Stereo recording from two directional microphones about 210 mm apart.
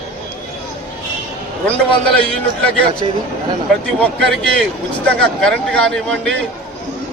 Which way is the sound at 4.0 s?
5° left (ahead or behind).